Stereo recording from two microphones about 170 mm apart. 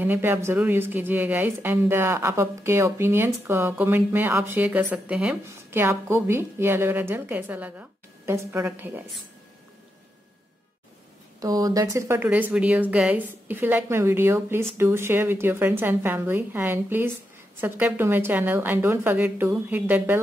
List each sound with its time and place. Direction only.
0.0 s speech: 10° right (ahead or behind)
11.3 s speech: 20° right (ahead or behind)